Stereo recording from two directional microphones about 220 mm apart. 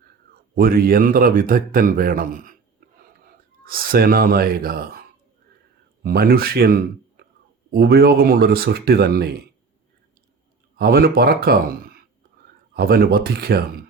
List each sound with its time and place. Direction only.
0.5 s speech: 40° right (ahead or behind)
3.6 s speech: 45° right (ahead or behind)
6.0 s speech: 45° right (ahead or behind)
10.8 s speech: 45° right (ahead or behind)